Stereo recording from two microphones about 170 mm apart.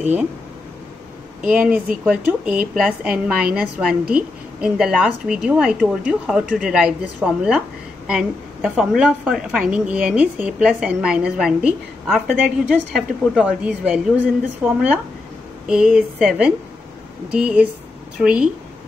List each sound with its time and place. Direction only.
0.0 s speech: 10° right (ahead or behind)
1.5 s a woman's voice: 5° right (ahead or behind)